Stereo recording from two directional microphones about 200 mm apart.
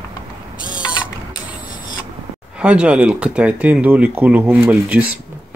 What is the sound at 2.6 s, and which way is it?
Speech, 5° right (ahead or behind).